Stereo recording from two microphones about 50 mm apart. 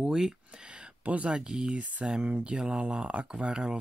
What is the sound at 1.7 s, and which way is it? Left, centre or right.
Speech, right.